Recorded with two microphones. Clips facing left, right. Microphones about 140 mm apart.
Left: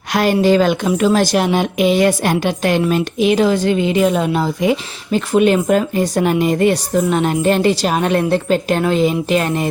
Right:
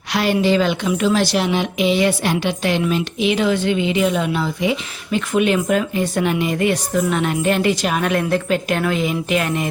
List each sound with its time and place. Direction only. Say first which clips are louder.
0.1 s a woman's voice: left 4 dB; 45° left (ahead or behind)